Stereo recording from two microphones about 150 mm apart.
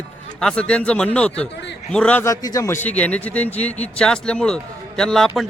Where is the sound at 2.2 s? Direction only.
25° left (ahead or behind).